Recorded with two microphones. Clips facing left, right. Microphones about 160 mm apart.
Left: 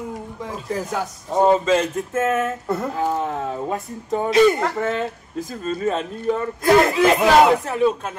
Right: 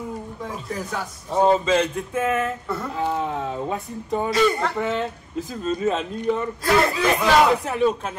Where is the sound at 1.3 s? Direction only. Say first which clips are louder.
Left 2 dB; 10° left (ahead or behind).